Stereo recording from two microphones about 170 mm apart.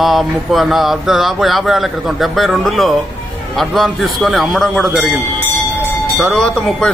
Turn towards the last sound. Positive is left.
turn(degrees=5)  # may be behind; listen again after turning